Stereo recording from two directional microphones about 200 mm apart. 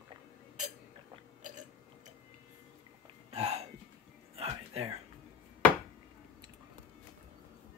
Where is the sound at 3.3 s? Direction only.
30° right (ahead or behind).